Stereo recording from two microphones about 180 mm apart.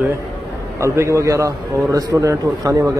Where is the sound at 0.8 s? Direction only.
15° right (ahead or behind).